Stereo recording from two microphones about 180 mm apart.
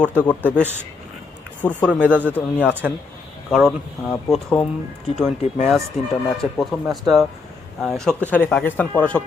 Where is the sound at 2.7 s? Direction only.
10° right (ahead or behind).